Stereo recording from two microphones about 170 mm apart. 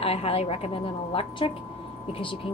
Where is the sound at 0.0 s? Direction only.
35° left (ahead or behind).